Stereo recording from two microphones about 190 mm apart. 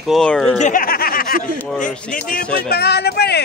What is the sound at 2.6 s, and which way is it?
Speech, 55° left (ahead or behind).